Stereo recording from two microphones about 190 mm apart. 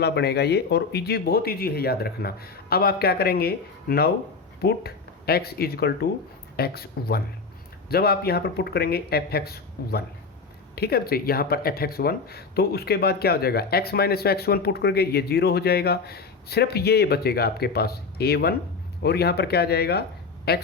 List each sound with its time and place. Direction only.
0.0 s a man's voice: 60° left (ahead or behind)